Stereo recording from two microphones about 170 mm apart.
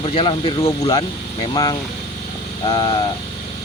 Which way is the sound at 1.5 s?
25° left (ahead or behind).